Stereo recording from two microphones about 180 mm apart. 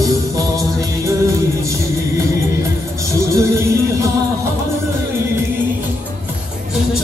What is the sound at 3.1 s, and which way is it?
Music, 15° right (ahead or behind).